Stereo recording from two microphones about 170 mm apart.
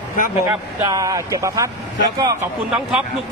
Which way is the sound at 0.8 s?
20° right (ahead or behind).